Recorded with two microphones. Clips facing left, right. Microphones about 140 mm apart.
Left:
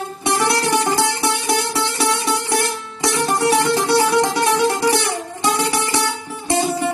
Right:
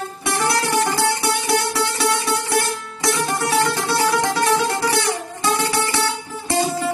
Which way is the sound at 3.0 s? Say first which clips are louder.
Left 3 dB; 20° left (ahead or behind).